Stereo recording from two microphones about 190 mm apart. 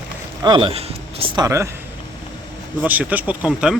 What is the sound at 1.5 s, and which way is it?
Speech, 15° right (ahead or behind).